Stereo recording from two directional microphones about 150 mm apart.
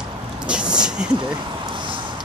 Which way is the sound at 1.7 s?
35° right (ahead or behind).